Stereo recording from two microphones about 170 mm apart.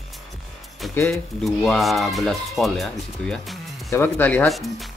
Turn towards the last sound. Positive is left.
turn(degrees=0)  # may be behind; listen again after turning